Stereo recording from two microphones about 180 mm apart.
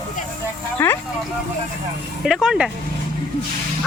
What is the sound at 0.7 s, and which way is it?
Speech, 10° left (ahead or behind).